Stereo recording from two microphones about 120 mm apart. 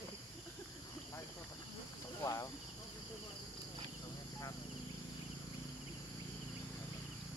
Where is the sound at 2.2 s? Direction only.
25° left (ahead or behind).